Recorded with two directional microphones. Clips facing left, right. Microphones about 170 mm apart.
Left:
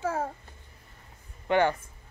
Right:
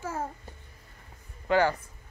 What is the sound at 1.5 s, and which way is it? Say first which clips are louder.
Speech: even; 25° left (ahead or behind).